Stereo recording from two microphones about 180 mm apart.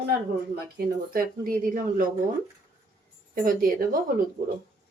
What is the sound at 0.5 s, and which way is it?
Speech, 55° right (ahead or behind).